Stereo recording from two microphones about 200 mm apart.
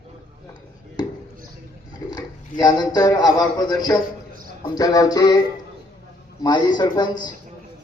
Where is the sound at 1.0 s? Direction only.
20° left (ahead or behind).